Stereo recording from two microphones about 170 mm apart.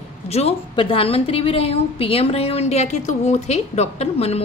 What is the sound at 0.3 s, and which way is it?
A woman's voice, 35° left (ahead or behind).